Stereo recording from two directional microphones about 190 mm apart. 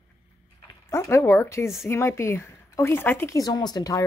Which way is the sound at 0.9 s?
15° left (ahead or behind).